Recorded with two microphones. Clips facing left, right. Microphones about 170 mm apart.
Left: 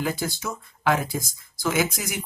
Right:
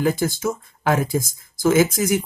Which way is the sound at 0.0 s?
45° right (ahead or behind).